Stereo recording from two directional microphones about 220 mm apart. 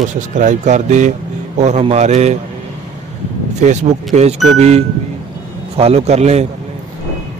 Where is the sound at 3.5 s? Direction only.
35° right (ahead or behind).